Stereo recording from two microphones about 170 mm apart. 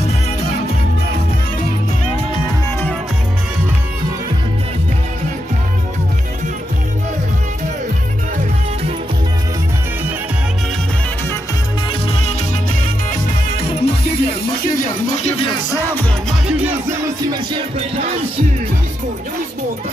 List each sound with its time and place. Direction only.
12.1 s music: 40° left (ahead or behind)
13.7 s music: 35° left (ahead or behind)
15.7 s music: 10° left (ahead or behind)
16.3 s music: 5° right (ahead or behind)
17.3 s music: 30° right (ahead or behind)